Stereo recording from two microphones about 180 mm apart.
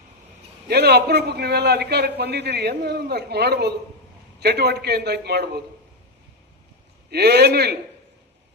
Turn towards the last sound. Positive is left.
turn(degrees=-65)  # may be behind; listen again after turning